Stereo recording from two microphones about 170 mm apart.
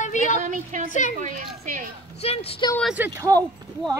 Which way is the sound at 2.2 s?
35° left (ahead or behind).